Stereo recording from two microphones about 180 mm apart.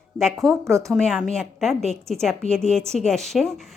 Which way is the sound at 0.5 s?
15° right (ahead or behind).